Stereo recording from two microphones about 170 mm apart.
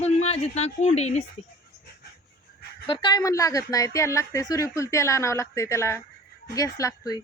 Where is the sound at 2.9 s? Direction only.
25° left (ahead or behind).